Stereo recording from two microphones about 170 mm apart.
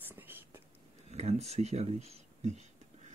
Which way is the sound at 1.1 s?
40° right (ahead or behind).